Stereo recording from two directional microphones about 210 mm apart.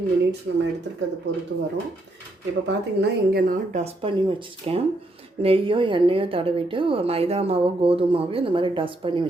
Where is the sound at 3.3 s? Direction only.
45° right (ahead or behind).